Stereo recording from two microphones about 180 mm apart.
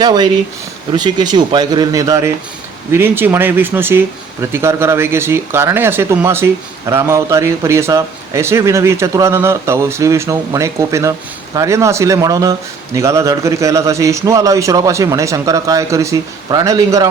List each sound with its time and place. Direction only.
0.0 s speech: 25° right (ahead or behind)